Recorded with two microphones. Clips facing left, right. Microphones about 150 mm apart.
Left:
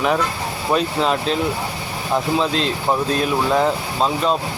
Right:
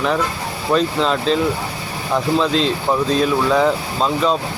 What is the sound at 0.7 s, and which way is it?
Speech, 10° left (ahead or behind).